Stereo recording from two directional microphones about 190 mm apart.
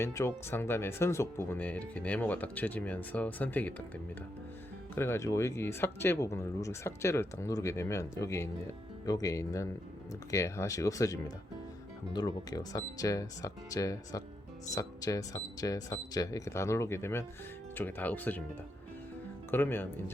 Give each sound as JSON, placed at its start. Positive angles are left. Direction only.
{"t": 0.0, "sound": "speech", "side_deg": 15}
{"t": 4.9, "sound": "speech", "side_deg": 15}
{"t": 19.5, "sound": "speech", "side_deg": 10}